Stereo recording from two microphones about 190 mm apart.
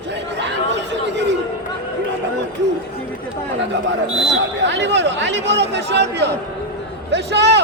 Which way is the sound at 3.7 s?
70° right (ahead or behind).